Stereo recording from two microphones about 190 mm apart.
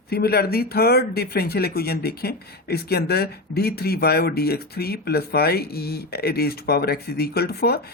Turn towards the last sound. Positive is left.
turn(degrees=55)  # may be behind; listen again after turning